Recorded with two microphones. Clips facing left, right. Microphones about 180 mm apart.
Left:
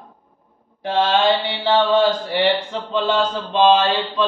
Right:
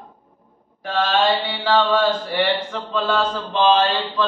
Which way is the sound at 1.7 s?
20° left (ahead or behind).